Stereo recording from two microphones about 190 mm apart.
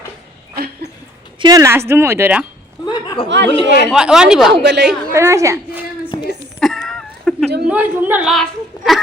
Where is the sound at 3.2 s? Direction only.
70° right (ahead or behind).